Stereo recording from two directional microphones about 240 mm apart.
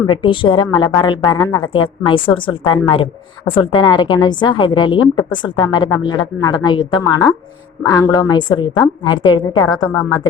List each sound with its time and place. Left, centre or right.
0.0 s a woman's voice: left